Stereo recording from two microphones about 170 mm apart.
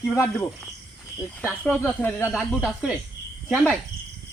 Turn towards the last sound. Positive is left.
turn(degrees=0)  # may be behind; listen again after turning